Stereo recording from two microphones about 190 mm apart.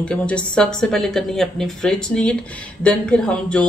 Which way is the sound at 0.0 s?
5° left (ahead or behind).